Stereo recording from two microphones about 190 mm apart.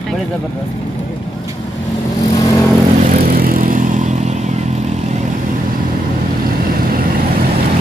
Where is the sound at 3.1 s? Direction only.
50° right (ahead or behind).